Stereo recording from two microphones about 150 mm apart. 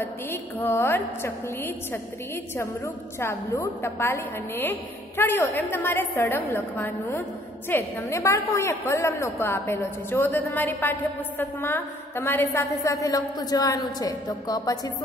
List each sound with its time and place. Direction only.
0.0 s a woman's voice: 15° left (ahead or behind)